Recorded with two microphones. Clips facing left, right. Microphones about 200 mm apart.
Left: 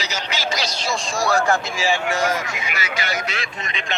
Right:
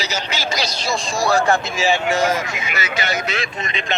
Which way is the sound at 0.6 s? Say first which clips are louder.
Right 2 dB; 35° right (ahead or behind).